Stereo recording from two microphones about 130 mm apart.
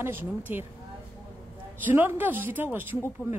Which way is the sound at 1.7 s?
15° right (ahead or behind).